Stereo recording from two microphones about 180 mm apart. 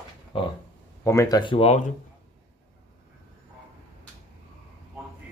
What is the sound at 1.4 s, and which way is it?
Speech, 30° left (ahead or behind).